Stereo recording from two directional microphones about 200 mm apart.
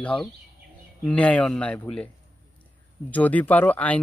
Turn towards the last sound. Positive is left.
turn(degrees=10)  # may be behind; listen again after turning